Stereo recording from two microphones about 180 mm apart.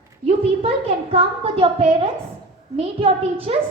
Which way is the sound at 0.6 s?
30° right (ahead or behind).